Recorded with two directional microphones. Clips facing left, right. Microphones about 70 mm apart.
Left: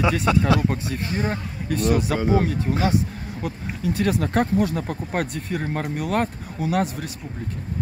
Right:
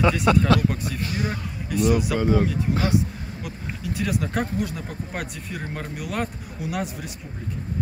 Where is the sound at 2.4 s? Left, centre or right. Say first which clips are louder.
Left 1 dB; left.